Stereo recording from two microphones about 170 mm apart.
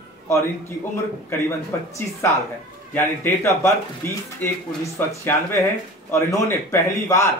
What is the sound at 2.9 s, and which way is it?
A man's voice, 15° left (ahead or behind).